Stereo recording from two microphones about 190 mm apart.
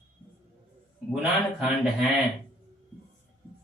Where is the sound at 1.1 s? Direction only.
Centre (ahead or behind).